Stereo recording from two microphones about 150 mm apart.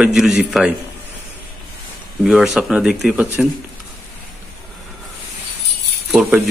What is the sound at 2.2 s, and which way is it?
Speech, 5° right (ahead or behind).